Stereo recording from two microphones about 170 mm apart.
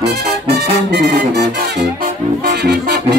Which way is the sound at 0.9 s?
80° right.